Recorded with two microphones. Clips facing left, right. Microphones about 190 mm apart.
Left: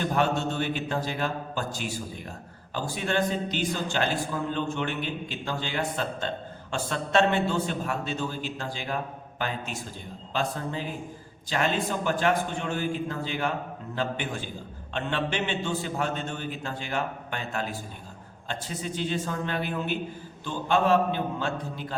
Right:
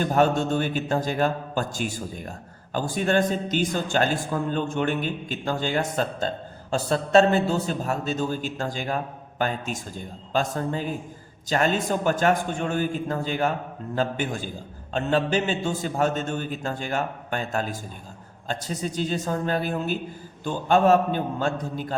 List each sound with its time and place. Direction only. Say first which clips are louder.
0.0 s a man's voice: right 5 dB; 45° right (ahead or behind)
10.3 s a man's voice: right 4 dB; 45° right (ahead or behind)